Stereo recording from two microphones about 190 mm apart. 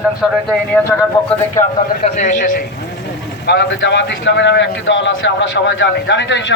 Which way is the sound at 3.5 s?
70° left (ahead or behind).